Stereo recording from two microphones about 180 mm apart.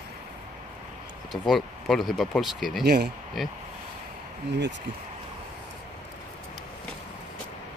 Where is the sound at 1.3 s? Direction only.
Centre (ahead or behind).